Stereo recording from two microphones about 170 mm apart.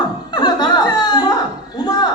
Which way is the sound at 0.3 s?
25° left (ahead or behind).